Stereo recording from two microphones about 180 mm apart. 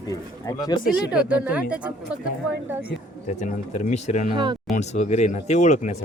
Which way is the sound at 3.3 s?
40° left (ahead or behind).